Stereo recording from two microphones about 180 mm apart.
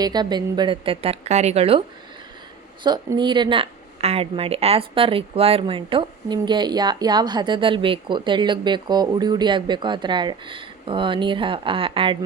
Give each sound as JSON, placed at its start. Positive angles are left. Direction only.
{"t": 0.0, "sound": "speech", "side_deg": -25}
{"t": 2.8, "sound": "speech", "side_deg": -25}